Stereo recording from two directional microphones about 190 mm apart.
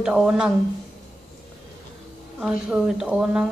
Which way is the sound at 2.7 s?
5° right (ahead or behind).